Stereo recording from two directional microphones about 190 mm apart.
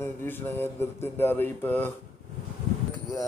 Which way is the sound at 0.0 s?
10° left (ahead or behind).